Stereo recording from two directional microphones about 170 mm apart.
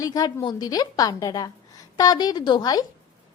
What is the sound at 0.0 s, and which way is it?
A woman's voice, 20° left (ahead or behind).